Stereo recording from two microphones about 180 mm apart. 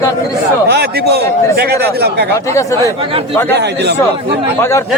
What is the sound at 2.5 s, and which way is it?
Speech, 15° left (ahead or behind).